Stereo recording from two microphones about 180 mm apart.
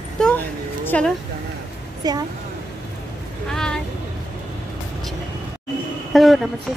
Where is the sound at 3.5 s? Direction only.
5° left (ahead or behind).